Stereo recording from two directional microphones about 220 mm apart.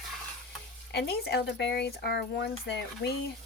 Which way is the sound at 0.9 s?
45° left (ahead or behind).